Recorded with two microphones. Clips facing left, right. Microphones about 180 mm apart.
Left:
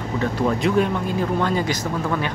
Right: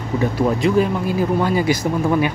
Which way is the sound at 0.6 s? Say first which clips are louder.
Right 3 dB; 5° right (ahead or behind).